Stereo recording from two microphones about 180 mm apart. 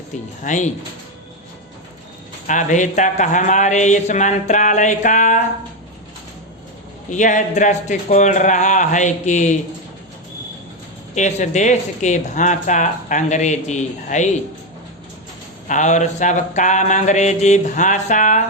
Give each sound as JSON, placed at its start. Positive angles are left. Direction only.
{"t": 0.4, "sound": "a man's voice", "side_deg": 40}
{"t": 2.5, "sound": "a man's voice", "side_deg": 45}
{"t": 7.1, "sound": "a man's voice", "side_deg": 45}
{"t": 11.1, "sound": "speech", "side_deg": 40}
{"t": 15.6, "sound": "a man's voice", "side_deg": 45}